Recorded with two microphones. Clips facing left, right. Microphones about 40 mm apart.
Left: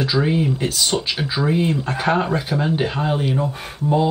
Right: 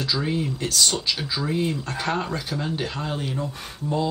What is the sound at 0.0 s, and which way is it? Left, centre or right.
Speech, left.